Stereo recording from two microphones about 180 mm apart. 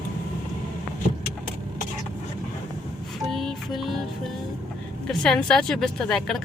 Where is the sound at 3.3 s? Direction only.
Centre (ahead or behind).